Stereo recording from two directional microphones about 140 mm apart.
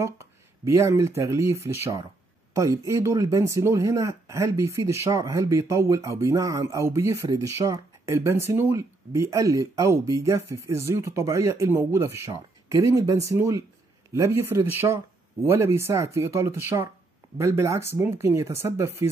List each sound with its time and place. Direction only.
0.0 s speech: 20° right (ahead or behind)